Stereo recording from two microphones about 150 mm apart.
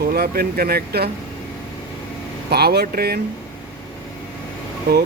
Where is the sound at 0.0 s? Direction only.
90° right.